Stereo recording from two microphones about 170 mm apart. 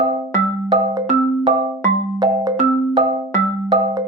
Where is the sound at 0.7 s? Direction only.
35° right (ahead or behind).